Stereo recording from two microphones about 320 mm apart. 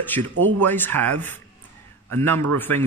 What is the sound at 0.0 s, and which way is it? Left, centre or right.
Speech, centre.